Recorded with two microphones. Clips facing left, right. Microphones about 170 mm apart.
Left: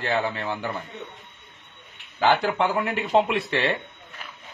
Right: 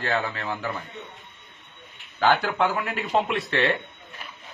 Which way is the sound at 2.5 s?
25° left (ahead or behind).